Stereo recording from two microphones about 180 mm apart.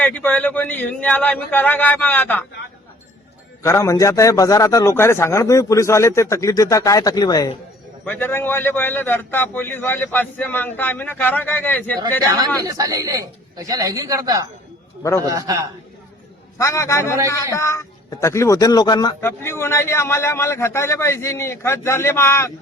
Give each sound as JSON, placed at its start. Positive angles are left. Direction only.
{"t": 0.0, "sound": "a man's voice", "side_deg": 10}
{"t": 3.6, "sound": "a man's voice", "side_deg": 15}
{"t": 8.0, "sound": "a man's voice", "side_deg": 10}
{"t": 12.6, "sound": "a man's voice", "side_deg": -20}
{"t": 16.6, "sound": "a man's voice", "side_deg": 15}